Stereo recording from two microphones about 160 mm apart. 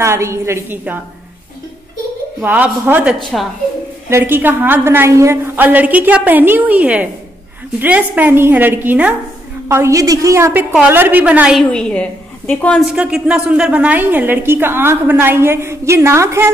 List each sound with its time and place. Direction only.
0.0 s a woman's voice: 15° right (ahead or behind)
2.4 s a woman's voice: 10° right (ahead or behind)
11.7 s a woman's voice: 10° left (ahead or behind)
12.9 s a woman's voice: 5° right (ahead or behind)